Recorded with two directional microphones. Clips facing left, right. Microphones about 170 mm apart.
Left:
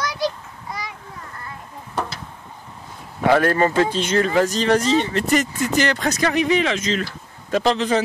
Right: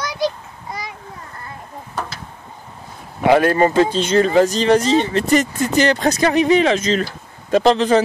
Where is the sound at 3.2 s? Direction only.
20° right (ahead or behind).